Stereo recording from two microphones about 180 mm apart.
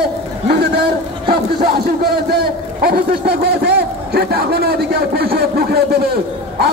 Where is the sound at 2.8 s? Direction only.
60° right (ahead or behind).